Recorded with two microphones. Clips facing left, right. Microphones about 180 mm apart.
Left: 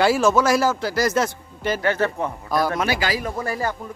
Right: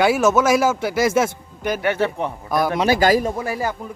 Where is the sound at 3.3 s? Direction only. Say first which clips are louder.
Right 1 dB; 10° right (ahead or behind).